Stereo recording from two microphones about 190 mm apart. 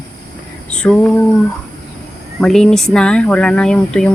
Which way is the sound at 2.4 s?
5° left (ahead or behind).